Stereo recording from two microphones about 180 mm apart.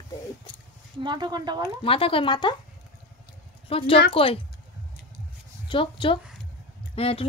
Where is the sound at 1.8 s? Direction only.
30° left (ahead or behind).